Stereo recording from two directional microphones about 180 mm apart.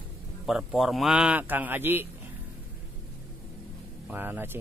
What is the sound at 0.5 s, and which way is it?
A man's voice, 5° right (ahead or behind).